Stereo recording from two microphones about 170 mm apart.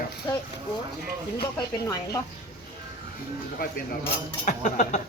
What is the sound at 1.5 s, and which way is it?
Speech, 20° left (ahead or behind).